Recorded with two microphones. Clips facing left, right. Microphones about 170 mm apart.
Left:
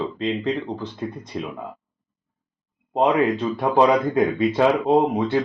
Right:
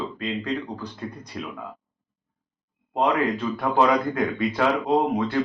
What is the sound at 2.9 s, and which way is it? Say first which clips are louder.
Speech: left 4 dB; 20° left (ahead or behind).